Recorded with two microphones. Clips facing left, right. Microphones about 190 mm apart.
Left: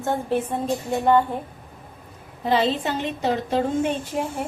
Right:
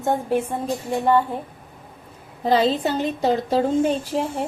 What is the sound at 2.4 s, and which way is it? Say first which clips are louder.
Speech: right 3 dB; 40° right (ahead or behind).